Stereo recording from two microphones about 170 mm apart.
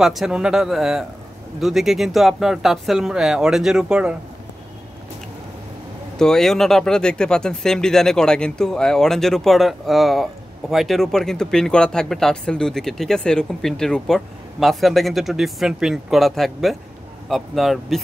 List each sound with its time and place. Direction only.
0.0 s speech: centre (ahead or behind)
6.1 s speech: 5° left (ahead or behind)